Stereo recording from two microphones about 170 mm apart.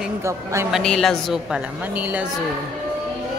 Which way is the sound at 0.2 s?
15° right (ahead or behind).